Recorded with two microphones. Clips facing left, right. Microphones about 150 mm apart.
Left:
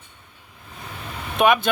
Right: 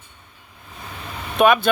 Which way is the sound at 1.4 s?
20° left (ahead or behind).